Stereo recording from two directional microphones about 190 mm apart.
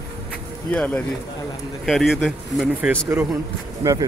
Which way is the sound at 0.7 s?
5° left (ahead or behind).